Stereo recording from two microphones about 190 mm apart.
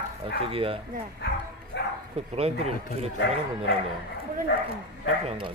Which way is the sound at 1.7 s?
65° left (ahead or behind).